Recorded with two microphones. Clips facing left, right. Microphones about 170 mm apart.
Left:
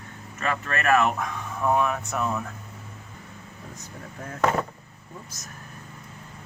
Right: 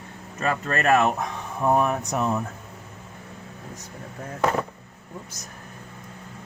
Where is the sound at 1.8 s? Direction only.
35° right (ahead or behind).